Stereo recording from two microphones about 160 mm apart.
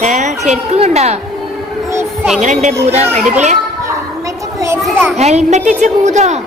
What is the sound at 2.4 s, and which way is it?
Speech, 50° right (ahead or behind).